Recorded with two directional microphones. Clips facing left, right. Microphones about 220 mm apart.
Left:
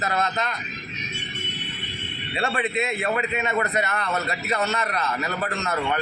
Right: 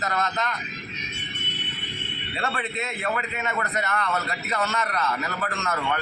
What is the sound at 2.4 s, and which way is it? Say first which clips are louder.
A man's voice: left 5 dB; 15° left (ahead or behind).